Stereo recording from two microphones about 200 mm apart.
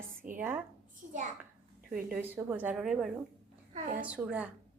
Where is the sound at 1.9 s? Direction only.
5° right (ahead or behind).